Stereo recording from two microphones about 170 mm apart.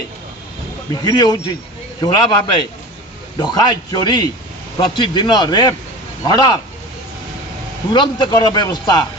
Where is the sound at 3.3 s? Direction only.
25° left (ahead or behind).